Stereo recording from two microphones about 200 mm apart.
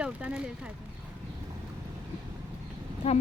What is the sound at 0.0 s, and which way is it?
Speech, 5° right (ahead or behind).